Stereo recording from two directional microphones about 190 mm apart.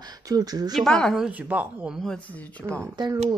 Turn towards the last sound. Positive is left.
turn(degrees=-15)  # may be behind; listen again after turning